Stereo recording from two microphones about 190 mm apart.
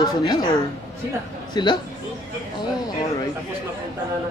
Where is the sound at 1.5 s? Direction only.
25° left (ahead or behind).